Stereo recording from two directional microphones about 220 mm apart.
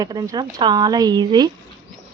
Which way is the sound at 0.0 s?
15° right (ahead or behind).